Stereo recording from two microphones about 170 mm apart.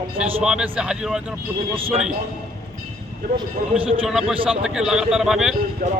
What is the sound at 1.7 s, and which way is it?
Speech, 30° right (ahead or behind).